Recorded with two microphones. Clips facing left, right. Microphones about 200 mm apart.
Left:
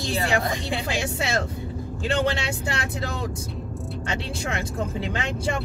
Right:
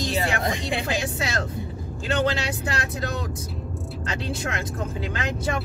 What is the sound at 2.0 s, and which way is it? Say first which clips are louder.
Speech: even; 30° left (ahead or behind).